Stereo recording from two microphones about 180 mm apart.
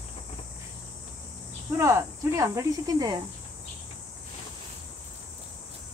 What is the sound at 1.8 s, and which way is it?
Speech, 15° right (ahead or behind).